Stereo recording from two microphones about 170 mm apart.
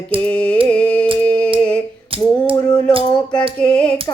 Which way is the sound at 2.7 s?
5° left (ahead or behind).